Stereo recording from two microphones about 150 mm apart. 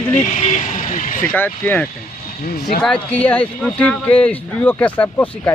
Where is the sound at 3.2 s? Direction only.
10° left (ahead or behind).